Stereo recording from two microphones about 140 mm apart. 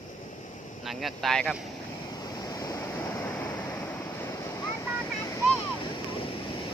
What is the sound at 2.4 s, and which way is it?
Waves, 25° left (ahead or behind).